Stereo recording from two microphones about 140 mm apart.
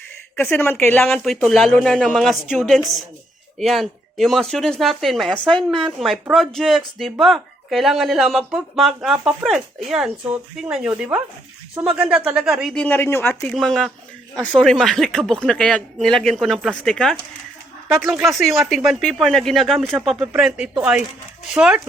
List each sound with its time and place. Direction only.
0.3 s speech: 15° left (ahead or behind)
1.0 s speech: centre (ahead or behind)
12.7 s speech: 10° left (ahead or behind)
13.5 s speech: centre (ahead or behind)